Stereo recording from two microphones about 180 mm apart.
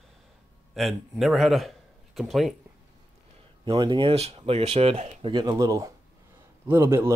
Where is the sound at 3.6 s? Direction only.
25° right (ahead or behind).